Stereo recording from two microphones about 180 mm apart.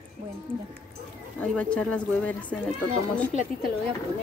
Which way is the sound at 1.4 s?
5° left (ahead or behind).